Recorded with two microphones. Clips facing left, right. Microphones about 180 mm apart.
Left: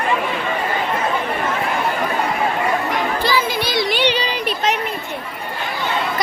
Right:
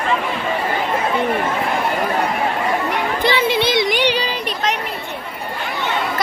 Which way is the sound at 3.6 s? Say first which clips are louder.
Right 2 dB; 20° right (ahead or behind).